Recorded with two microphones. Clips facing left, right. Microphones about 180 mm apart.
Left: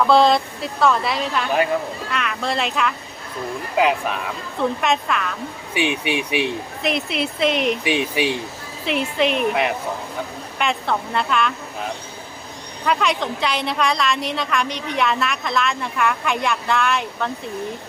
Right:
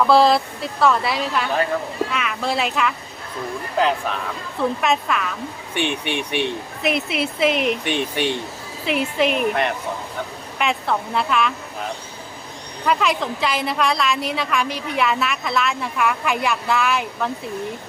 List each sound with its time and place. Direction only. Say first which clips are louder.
0.1 s a woman's voice: even; 5° right (ahead or behind)
4.8 s a woman's voice: even; centre (ahead or behind)
12.8 s a woman's voice: even; centre (ahead or behind)